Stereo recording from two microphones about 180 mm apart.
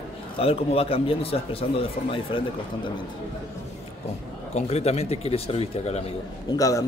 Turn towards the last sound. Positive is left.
turn(degrees=20)  # may be behind; listen again after turning